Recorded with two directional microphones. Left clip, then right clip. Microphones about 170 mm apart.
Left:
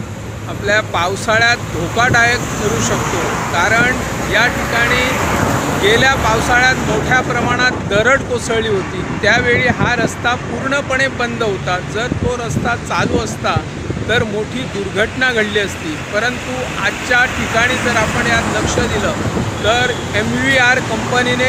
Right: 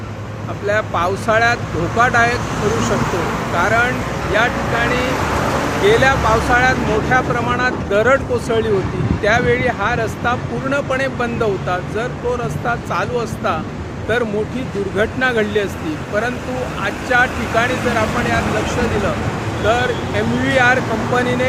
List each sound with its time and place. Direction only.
0.7 s speech: 5° right (ahead or behind)
3.6 s speech: centre (ahead or behind)
14.9 s speech: centre (ahead or behind)
16.8 s speech: centre (ahead or behind)
19.6 s speech: centre (ahead or behind)